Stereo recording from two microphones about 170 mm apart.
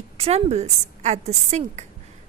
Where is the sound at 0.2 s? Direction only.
40° right (ahead or behind).